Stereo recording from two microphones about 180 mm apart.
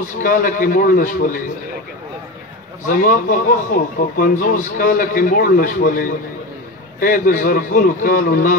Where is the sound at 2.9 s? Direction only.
50° left (ahead or behind).